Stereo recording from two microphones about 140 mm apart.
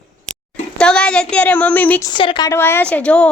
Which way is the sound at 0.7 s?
5° left (ahead or behind).